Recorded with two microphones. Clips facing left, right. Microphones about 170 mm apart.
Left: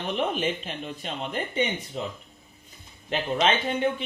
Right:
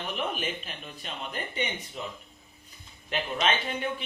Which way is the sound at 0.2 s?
30° left (ahead or behind).